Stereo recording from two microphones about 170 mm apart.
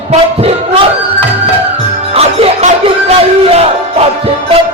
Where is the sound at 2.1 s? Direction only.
35° right (ahead or behind).